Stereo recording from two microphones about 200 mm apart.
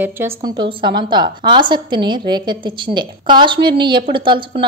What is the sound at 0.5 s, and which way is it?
A woman's voice, 25° right (ahead or behind).